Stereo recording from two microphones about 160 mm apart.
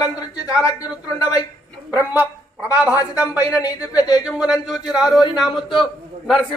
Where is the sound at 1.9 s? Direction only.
10° right (ahead or behind).